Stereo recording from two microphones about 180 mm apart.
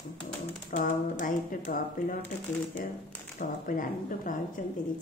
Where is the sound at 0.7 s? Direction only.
45° left (ahead or behind).